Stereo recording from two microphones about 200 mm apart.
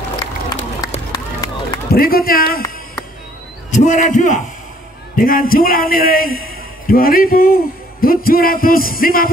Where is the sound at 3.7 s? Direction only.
40° left (ahead or behind).